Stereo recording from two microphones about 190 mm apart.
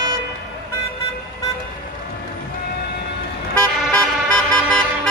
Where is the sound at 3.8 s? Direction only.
5° left (ahead or behind).